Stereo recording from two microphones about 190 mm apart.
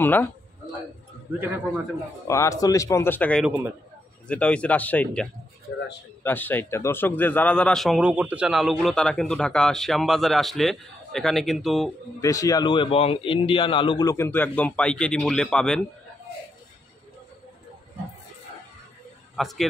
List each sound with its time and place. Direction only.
0.0 s a man's voice: 10° left (ahead or behind)
1.4 s a man's voice: 10° right (ahead or behind)
2.2 s a man's voice: 15° left (ahead or behind)
3.4 s a man's voice: 10° right (ahead or behind)
4.3 s a man's voice: 5° left (ahead or behind)
12.2 s a man's voice: 15° left (ahead or behind)
19.3 s speech: centre (ahead or behind)